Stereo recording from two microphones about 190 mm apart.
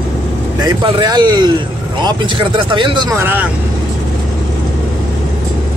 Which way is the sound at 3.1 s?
10° right (ahead or behind).